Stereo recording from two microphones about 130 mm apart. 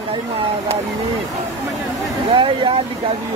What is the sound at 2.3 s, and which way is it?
Speech, 40° right (ahead or behind).